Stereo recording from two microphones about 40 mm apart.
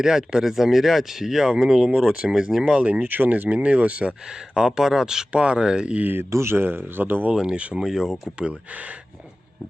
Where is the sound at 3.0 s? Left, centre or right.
Right.